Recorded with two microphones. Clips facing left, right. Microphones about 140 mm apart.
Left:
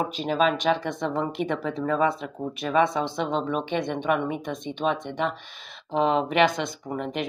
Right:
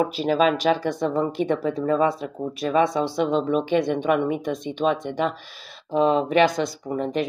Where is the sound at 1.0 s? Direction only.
45° right (ahead or behind).